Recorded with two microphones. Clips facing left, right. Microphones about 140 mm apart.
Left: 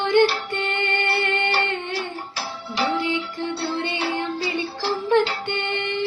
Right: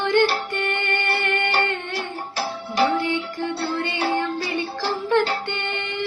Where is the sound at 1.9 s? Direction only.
50° right (ahead or behind).